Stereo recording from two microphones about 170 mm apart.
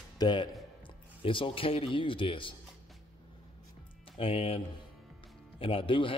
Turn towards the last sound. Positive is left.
turn(degrees=30)  # may be behind; listen again after turning